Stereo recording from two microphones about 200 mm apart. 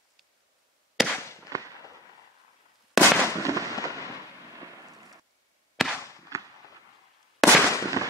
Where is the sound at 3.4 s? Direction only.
15° right (ahead or behind).